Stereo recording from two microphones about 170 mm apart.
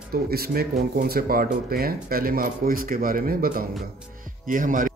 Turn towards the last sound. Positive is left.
turn(degrees=-55)  # may be behind; listen again after turning